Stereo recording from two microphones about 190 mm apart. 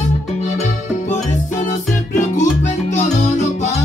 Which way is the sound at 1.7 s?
40° left (ahead or behind).